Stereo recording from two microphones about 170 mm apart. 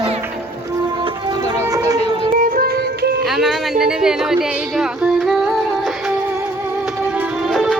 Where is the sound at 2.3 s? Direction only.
60° right (ahead or behind).